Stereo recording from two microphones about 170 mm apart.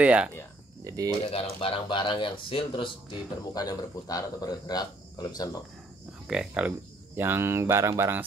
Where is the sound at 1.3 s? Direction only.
30° left (ahead or behind).